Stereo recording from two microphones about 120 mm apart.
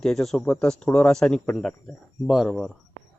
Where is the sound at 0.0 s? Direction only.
5° left (ahead or behind).